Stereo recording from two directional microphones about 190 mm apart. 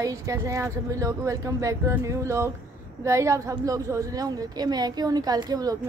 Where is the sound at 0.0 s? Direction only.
15° right (ahead or behind).